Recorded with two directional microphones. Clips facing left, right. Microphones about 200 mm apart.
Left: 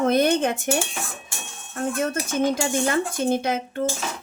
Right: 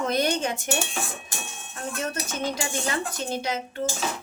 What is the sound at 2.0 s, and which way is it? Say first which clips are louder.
Speech: left 6 dB; 50° left (ahead or behind).